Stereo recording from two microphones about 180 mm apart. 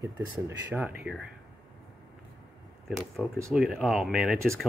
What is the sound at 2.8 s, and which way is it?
Speech, centre (ahead or behind).